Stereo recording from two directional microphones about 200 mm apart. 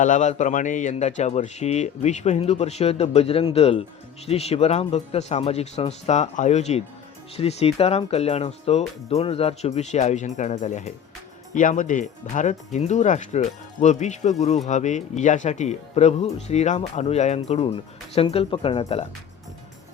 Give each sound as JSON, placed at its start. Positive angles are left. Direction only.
{"t": 0.0, "sound": "speech", "side_deg": 40}